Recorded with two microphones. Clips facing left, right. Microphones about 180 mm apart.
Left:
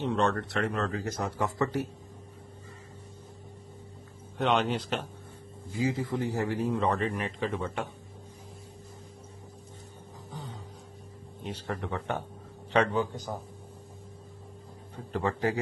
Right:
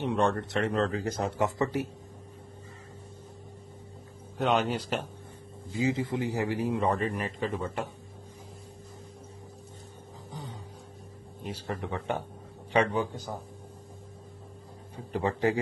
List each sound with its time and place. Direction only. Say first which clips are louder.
0.0 s a man's voice: right 1 dB; 10° right (ahead or behind)
4.4 s a man's voice: even; 5° right (ahead or behind)
5.7 s a man's voice: right 1 dB; 25° right (ahead or behind); by 7.9 s centre (ahead or behind)
11.4 s a man's voice: even; 10° right (ahead or behind)
15.1 s a man's voice: right 2 dB; 15° right (ahead or behind)